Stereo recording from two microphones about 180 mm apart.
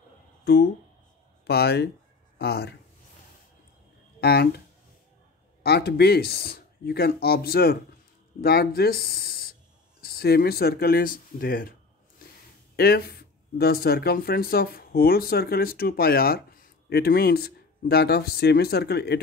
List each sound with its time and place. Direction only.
1.4 s speech: 65° left (ahead or behind)
4.2 s speech: 65° left (ahead or behind)
5.6 s speech: 65° left (ahead or behind)
12.7 s speech: 60° left (ahead or behind)